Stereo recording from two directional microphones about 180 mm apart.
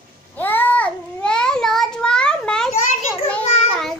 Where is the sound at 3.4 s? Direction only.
35° left (ahead or behind).